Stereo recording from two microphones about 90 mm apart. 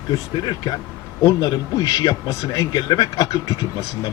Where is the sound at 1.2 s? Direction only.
50° left (ahead or behind).